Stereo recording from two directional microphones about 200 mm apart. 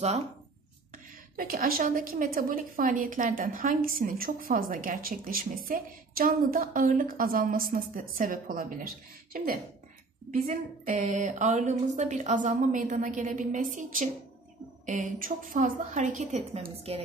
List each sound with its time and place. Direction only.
1.3 s a woman's voice: 45° right (ahead or behind)